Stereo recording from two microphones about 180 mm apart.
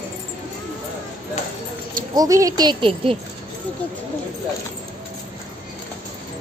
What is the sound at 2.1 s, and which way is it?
A child's voice, 20° right (ahead or behind).